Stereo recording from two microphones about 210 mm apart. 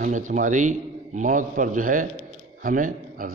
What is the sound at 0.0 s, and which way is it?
A man's voice, 35° right (ahead or behind).